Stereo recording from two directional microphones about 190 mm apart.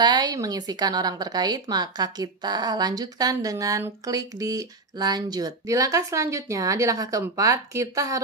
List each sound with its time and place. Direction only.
0.0 s speech: 20° right (ahead or behind)